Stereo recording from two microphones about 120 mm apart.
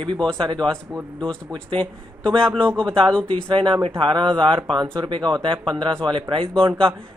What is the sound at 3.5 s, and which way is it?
Speech, 45° right (ahead or behind).